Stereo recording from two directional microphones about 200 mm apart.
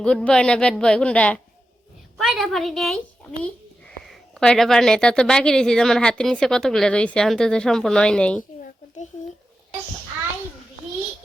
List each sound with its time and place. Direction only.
0.0 s speech: 5° left (ahead or behind)